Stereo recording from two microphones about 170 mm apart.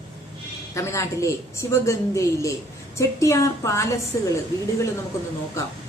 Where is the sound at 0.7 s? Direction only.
15° left (ahead or behind).